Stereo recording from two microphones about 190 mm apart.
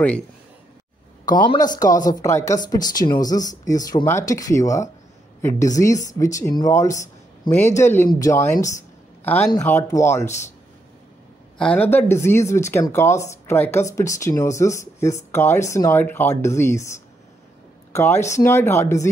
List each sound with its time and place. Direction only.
1.7 s speech: 20° left (ahead or behind)
10.2 s a man's voice: 35° left (ahead or behind)
11.5 s speech: 5° left (ahead or behind)